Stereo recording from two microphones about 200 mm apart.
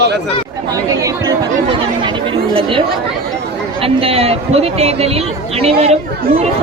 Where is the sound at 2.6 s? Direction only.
25° right (ahead or behind).